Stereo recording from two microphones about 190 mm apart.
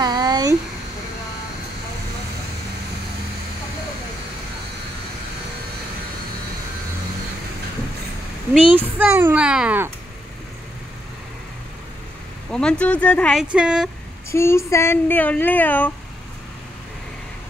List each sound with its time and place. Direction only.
0.0 s a sound: 20° right (ahead or behind)
8.5 s a child's voice: 10° right (ahead or behind)
12.4 s speech: 5° left (ahead or behind)
14.3 s speech: 15° left (ahead or behind)